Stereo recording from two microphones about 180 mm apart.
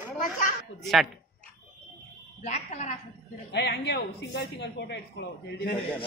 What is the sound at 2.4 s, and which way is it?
Speech, 40° left (ahead or behind).